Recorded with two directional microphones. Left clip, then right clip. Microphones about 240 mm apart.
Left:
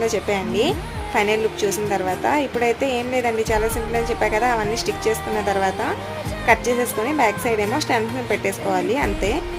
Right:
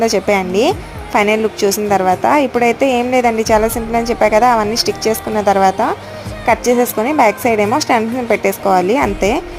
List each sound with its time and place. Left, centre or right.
0.0 s a woman's voice: right